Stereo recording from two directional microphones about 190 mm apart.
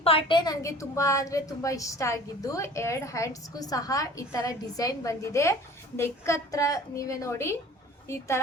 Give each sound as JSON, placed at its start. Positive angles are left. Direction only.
{"t": 0.0, "sound": "a woman's voice", "side_deg": 30}